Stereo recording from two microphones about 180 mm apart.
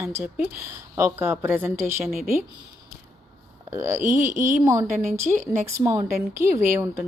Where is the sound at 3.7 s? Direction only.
15° right (ahead or behind).